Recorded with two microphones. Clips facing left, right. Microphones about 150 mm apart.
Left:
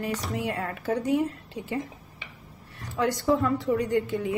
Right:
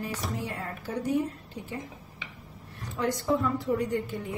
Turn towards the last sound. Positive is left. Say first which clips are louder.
# left 4 dB
turn(degrees=90)